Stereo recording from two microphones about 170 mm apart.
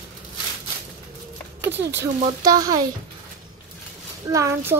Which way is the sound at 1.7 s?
90° right.